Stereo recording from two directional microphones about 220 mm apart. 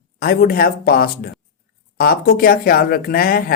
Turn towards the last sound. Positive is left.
turn(degrees=40)  # may be behind; listen again after turning